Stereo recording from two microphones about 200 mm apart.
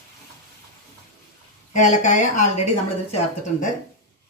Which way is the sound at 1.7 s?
40° left (ahead or behind).